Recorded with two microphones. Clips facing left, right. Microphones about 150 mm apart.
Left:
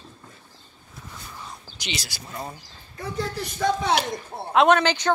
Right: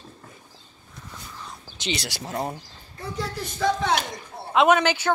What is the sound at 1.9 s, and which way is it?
Speech, 75° right (ahead or behind).